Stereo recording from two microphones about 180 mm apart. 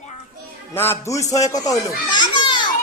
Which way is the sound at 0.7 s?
15° left (ahead or behind).